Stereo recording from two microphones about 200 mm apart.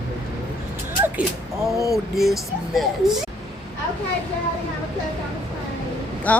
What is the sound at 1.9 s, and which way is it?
Speech, centre (ahead or behind).